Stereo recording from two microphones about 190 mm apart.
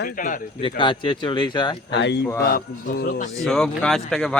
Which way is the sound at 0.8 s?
25° left (ahead or behind).